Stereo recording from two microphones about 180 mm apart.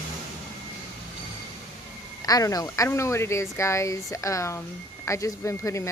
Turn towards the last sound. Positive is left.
turn(degrees=15)  # may be behind; listen again after turning